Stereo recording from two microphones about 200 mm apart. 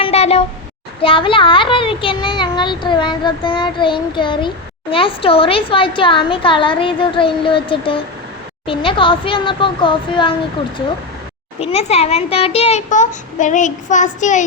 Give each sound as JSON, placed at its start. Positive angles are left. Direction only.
{"t": 0.0, "sound": "a sound", "side_deg": 30}
{"t": 1.0, "sound": "a child's voice", "side_deg": 25}
{"t": 11.6, "sound": "a child's voice", "side_deg": 30}